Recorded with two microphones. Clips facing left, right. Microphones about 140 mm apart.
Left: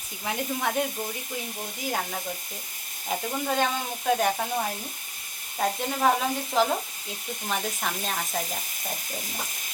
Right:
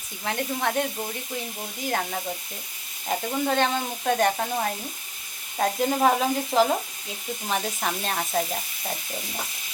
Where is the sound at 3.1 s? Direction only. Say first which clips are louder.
Right 3 dB; 5° left (ahead or behind).